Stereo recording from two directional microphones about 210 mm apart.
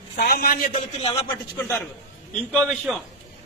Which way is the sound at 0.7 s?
25° left (ahead or behind).